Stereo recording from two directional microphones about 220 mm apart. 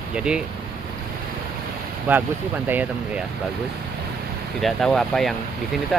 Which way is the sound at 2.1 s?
10° right (ahead or behind).